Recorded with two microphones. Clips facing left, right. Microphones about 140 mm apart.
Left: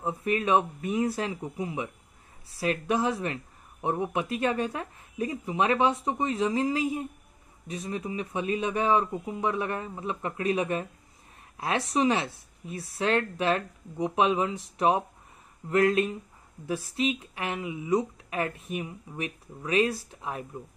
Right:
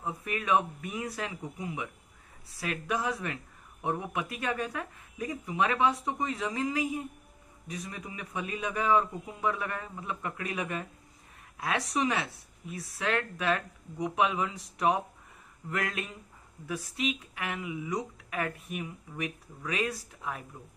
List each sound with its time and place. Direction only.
0.0 s speech: 30° left (ahead or behind)